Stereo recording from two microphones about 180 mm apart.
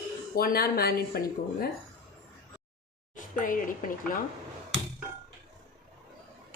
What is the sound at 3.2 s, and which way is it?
Speech, 50° left (ahead or behind).